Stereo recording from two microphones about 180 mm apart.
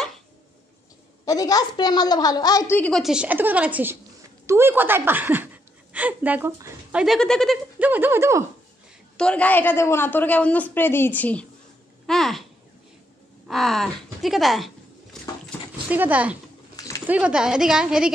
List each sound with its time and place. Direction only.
1.2 s a woman's voice: 20° left (ahead or behind); by 7.5 s 5° left (ahead or behind)
7.8 s speech: 10° right (ahead or behind)
9.1 s a woman's voice: 5° left (ahead or behind)
12.1 s a sound: centre (ahead or behind)
13.5 s speech: centre (ahead or behind)
15.9 s speech: 10° right (ahead or behind)
16.7 s a sound: 20° left (ahead or behind)
17.0 s a woman's voice: 10° right (ahead or behind)